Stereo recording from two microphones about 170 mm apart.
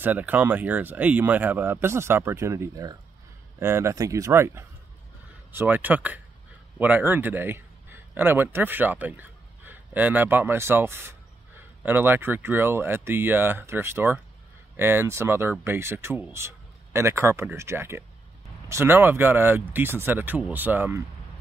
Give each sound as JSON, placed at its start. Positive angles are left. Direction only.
{"t": 0.0, "sound": "speech", "side_deg": -10}